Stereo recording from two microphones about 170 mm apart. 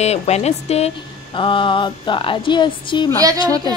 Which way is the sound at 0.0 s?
40° left (ahead or behind).